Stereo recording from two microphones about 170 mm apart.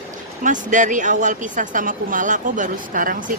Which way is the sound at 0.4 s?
50° right (ahead or behind).